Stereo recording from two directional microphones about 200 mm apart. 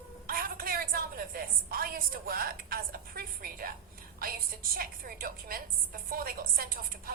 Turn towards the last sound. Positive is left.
turn(degrees=-45)  # may be behind; listen again after turning